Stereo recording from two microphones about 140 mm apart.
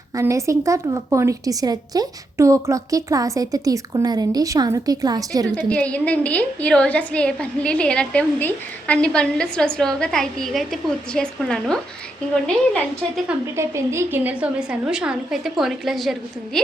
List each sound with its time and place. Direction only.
0.2 s a woman's voice: 20° right (ahead or behind)
5.5 s a woman's voice: 10° left (ahead or behind)
13.6 s a woman's voice: 20° right (ahead or behind); by 16.1 s centre (ahead or behind)